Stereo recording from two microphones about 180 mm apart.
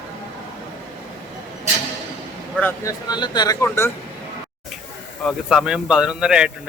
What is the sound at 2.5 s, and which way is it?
Speech, 15° left (ahead or behind).